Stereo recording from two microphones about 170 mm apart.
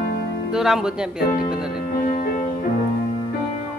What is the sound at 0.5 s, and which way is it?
Speech, 5° right (ahead or behind).